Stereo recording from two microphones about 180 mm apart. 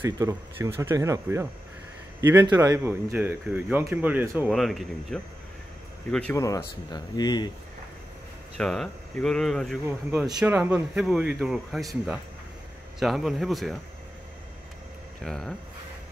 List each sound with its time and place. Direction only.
0.0 s speech: 15° right (ahead or behind)
2.5 s speech: 15° right (ahead or behind)
4.5 s speech: centre (ahead or behind)
6.3 s speech: 20° left (ahead or behind)
8.5 s speech: centre (ahead or behind)
9.8 s speech: 15° right (ahead or behind); by 13.7 s centre (ahead or behind)
15.2 s speech: 5° left (ahead or behind)